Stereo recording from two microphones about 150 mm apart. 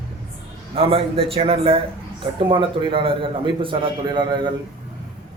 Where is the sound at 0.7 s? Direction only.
40° right (ahead or behind).